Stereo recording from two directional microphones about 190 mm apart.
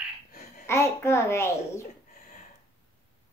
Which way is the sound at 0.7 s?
15° left (ahead or behind).